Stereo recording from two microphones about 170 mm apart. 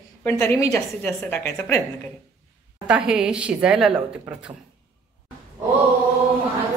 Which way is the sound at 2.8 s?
5° right (ahead or behind).